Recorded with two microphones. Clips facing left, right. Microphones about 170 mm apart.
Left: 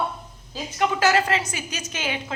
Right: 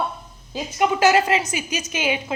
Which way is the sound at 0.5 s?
15° right (ahead or behind).